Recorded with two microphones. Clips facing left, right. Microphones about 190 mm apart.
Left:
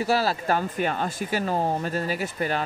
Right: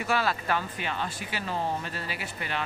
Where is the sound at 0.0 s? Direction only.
35° left (ahead or behind).